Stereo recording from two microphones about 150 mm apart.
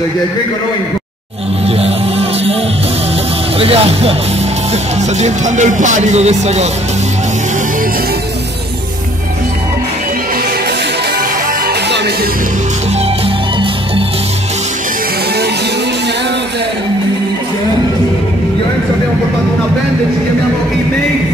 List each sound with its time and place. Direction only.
1.7 s music: 40° right (ahead or behind)
3.5 s speech: 40° right (ahead or behind)
5.2 s speech: 55° right (ahead or behind)